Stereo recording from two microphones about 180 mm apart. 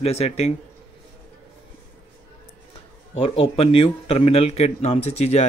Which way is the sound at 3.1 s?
30° left (ahead or behind).